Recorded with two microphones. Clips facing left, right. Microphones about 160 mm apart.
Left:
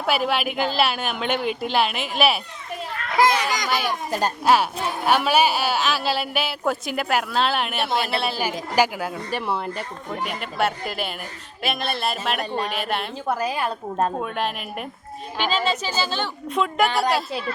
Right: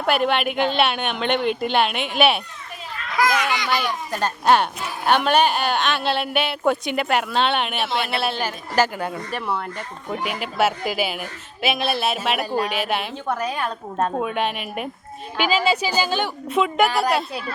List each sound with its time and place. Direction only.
0.0 s speech: centre (ahead or behind)
3.2 s a child's voice: 30° left (ahead or behind)
4.1 s speech: 10° left (ahead or behind)
8.4 s a woman's voice: 10° left (ahead or behind)
14.2 s a woman's voice: centre (ahead or behind)
16.5 s speech: 5° right (ahead or behind)